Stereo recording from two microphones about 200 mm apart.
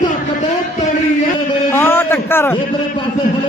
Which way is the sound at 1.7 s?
10° left (ahead or behind).